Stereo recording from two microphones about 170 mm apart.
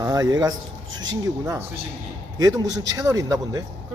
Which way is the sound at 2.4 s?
20° right (ahead or behind).